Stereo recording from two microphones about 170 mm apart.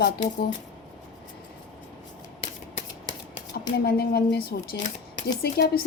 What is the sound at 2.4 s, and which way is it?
Shuffling cards, 30° left (ahead or behind).